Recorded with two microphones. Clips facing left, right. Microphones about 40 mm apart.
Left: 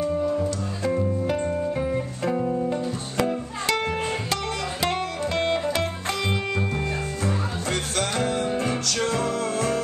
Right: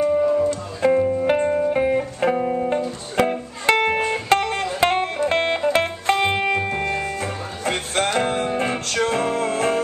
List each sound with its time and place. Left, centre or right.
0.0 s music: right